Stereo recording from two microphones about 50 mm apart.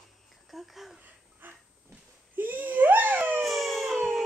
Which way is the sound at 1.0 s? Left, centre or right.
Right.